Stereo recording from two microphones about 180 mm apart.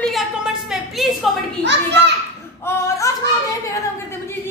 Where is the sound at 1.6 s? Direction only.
75° right (ahead or behind).